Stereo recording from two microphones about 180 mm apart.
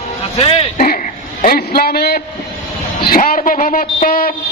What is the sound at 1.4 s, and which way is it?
A man's voice, 55° left (ahead or behind).